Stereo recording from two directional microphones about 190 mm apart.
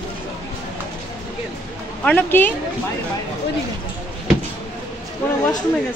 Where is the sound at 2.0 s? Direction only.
10° left (ahead or behind).